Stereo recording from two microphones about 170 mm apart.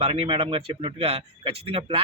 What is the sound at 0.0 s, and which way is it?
Speech, 30° right (ahead or behind).